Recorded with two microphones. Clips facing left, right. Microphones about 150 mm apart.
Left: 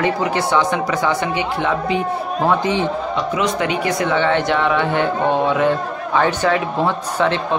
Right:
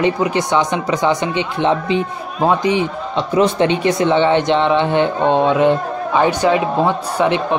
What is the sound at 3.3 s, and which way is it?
Speech, 30° right (ahead or behind).